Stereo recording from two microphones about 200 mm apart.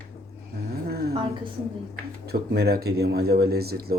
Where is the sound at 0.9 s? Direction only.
50° right (ahead or behind).